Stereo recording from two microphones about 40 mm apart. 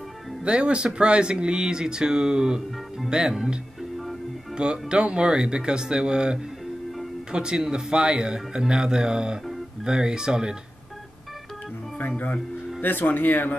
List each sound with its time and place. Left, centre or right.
0.4 s speech: right
4.6 s speech: right
12.8 s speech: left